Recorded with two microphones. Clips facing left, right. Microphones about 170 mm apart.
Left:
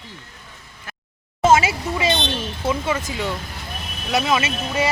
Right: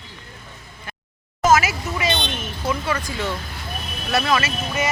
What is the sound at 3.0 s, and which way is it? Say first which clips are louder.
Vehicle: left 1 dB; 20° left (ahead or behind).